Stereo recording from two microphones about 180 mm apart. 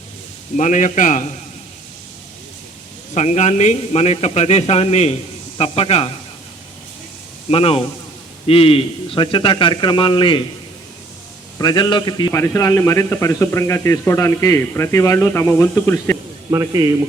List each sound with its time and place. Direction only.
0.5 s a man's voice: 45° left (ahead or behind)
3.2 s a man's voice: 40° left (ahead or behind)
7.5 s a man's voice: 30° left (ahead or behind)
11.5 s a man's voice: 25° left (ahead or behind)
16.5 s a man's voice: 20° right (ahead or behind)